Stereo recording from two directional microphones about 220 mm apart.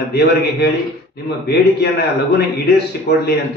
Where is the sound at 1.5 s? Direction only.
45° left (ahead or behind).